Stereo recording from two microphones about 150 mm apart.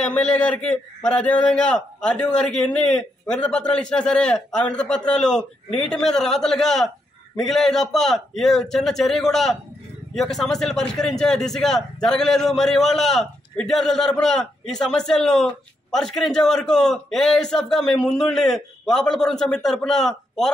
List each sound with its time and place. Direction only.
0.0 s a man's voice: 10° left (ahead or behind)